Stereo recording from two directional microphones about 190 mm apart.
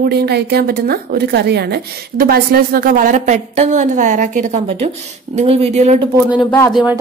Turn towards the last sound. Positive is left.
turn(degrees=-5)  # may be behind; listen again after turning